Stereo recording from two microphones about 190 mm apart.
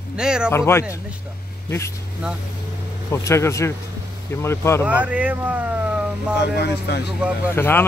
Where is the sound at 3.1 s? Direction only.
15° left (ahead or behind).